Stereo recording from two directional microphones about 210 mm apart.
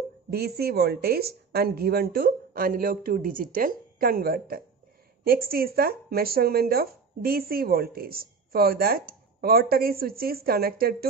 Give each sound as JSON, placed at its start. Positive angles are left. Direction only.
{"t": 0.3, "sound": "speech", "side_deg": -50}